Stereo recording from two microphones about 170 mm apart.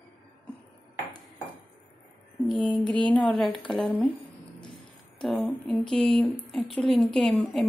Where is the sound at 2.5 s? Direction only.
25° left (ahead or behind).